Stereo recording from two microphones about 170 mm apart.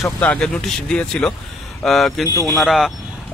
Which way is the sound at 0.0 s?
5° left (ahead or behind).